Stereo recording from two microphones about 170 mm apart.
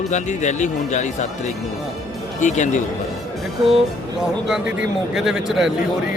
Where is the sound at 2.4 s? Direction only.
45° left (ahead or behind).